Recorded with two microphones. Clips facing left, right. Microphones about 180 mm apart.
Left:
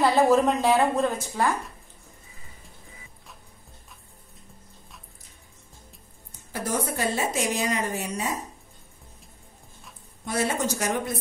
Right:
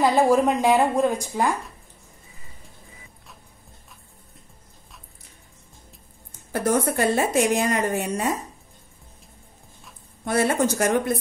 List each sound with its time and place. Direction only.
0.0 s a woman's voice: 10° right (ahead or behind)
6.5 s a woman's voice: 55° right (ahead or behind)
10.2 s a woman's voice: 60° right (ahead or behind)